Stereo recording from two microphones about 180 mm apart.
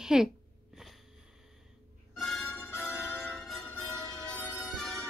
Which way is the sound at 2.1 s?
Centre (ahead or behind).